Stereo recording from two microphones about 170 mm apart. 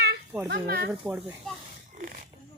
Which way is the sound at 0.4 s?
70° right (ahead or behind).